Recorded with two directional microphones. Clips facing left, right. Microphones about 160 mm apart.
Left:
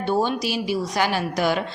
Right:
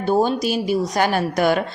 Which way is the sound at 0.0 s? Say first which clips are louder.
Right 4 dB; 40° right (ahead or behind).